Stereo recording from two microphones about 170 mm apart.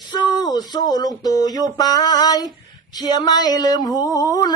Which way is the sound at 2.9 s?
25° left (ahead or behind).